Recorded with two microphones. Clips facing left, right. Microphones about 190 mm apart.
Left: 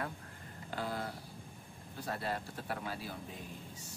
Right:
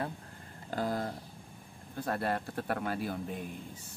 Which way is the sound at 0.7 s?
45° right (ahead or behind).